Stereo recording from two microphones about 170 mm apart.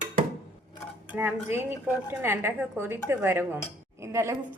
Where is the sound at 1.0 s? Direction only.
10° right (ahead or behind).